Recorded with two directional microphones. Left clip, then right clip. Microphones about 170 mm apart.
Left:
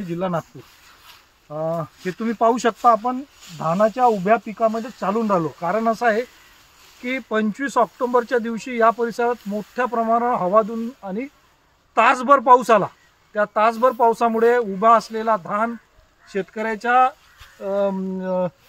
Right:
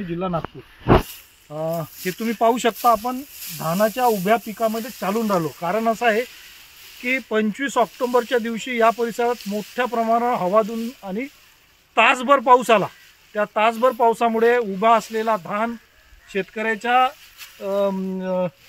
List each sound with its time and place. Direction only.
0.1 s speech: 25° left (ahead or behind)
1.5 s speech: centre (ahead or behind)
17.9 s speech: centre (ahead or behind)